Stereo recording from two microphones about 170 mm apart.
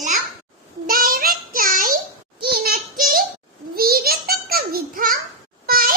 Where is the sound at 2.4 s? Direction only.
65° right (ahead or behind).